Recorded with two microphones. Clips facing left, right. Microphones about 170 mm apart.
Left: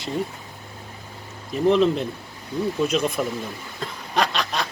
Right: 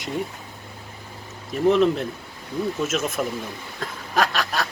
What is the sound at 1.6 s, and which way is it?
Speech, centre (ahead or behind).